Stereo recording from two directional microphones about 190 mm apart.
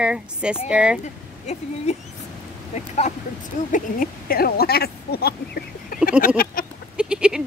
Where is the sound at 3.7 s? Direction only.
50° left (ahead or behind).